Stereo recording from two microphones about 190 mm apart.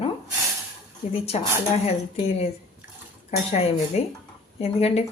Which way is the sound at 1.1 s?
30° left (ahead or behind).